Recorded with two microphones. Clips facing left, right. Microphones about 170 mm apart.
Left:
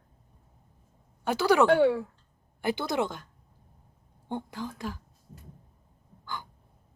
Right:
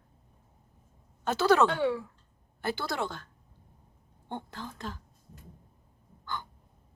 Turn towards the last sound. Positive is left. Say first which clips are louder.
# right 1 dB
turn(degrees=10)  # may be behind; listen again after turning